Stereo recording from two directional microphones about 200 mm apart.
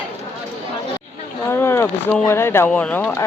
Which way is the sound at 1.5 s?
10° left (ahead or behind).